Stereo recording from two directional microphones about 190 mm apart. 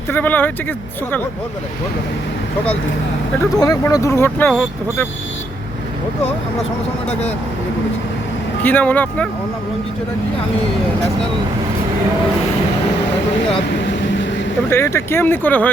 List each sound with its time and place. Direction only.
0.1 s speech: 10° left (ahead or behind)
3.5 s speech: 20° left (ahead or behind)
8.6 s speech: 10° left (ahead or behind)
13.8 s vehicle: 70° left (ahead or behind)
14.7 s speech: 15° left (ahead or behind)